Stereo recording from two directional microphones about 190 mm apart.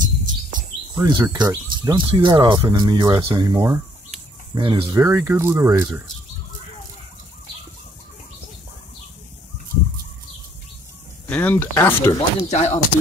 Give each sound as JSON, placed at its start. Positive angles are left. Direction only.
{"t": 0.9, "sound": "speech", "side_deg": -20}
{"t": 11.2, "sound": "speech", "side_deg": 10}
{"t": 12.4, "sound": "speech", "side_deg": 35}